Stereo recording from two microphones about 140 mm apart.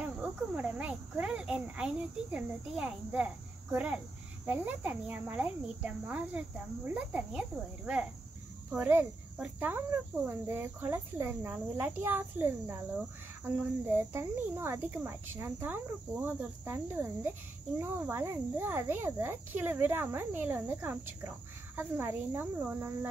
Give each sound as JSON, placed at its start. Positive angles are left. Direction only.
{"t": 0.0, "sound": "cricket", "side_deg": -10}